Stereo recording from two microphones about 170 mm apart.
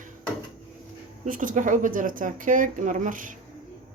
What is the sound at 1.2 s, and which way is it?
Speech, 50° right (ahead or behind).